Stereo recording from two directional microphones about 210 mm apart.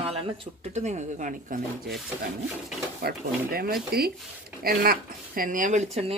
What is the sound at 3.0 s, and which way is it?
Speech, 45° right (ahead or behind).